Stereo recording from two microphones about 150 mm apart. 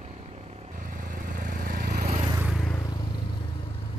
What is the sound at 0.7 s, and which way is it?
Vehicle, 70° right (ahead or behind).